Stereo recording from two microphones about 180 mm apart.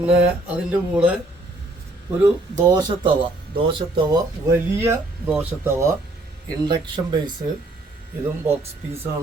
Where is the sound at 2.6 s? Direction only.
20° right (ahead or behind).